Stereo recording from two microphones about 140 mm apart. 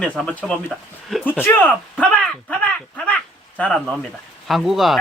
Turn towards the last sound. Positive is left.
turn(degrees=0)  # may be behind; listen again after turning